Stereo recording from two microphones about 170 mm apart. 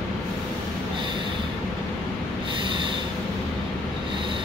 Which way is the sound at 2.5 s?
30° right (ahead or behind).